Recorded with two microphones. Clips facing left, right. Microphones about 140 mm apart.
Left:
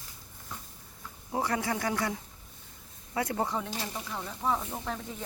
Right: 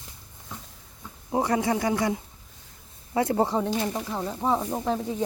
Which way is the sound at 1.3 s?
20° right (ahead or behind).